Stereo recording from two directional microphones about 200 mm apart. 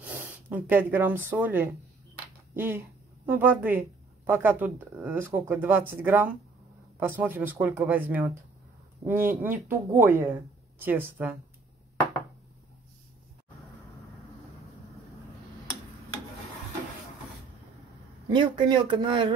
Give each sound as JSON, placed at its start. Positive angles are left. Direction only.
{"t": 0.0, "sound": "speech", "side_deg": -5}
{"t": 18.3, "sound": "speech", "side_deg": -20}